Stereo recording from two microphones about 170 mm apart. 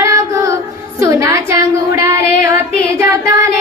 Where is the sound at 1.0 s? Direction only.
20° right (ahead or behind).